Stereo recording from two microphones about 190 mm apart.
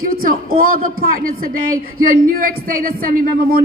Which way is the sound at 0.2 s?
50° right (ahead or behind).